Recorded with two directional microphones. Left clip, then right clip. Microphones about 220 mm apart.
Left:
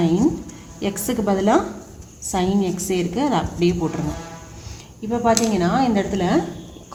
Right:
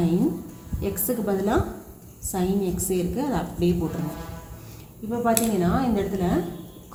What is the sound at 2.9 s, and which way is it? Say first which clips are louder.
Speech: left 7 dB; 45° left (ahead or behind).